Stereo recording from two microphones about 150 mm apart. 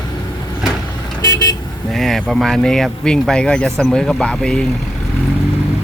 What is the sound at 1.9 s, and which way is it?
Speech, centre (ahead or behind).